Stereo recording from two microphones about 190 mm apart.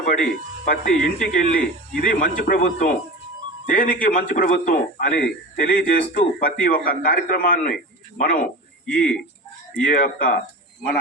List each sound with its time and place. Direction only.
0.1 s a man's voice: 45° left (ahead or behind)
8.9 s speech: 5° left (ahead or behind)
9.8 s a man's voice: 45° left (ahead or behind)